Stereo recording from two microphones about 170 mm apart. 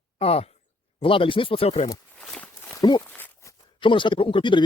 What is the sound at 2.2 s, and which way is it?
Walk, 5° left (ahead or behind).